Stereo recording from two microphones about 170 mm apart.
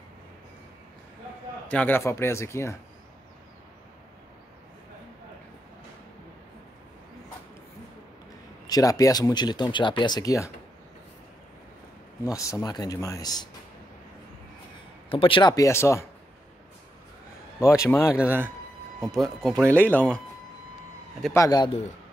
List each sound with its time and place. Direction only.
1.7 s speech: 10° left (ahead or behind)
8.6 s speech: 20° left (ahead or behind)
12.3 s speech: 20° left (ahead or behind)
15.0 s speech: 30° left (ahead or behind); by 16.1 s 15° left (ahead or behind)
17.6 s speech: 15° left (ahead or behind)
18.1 s speech: 10° right (ahead or behind); by 20.2 s 10° left (ahead or behind)
21.3 s speech: 20° left (ahead or behind)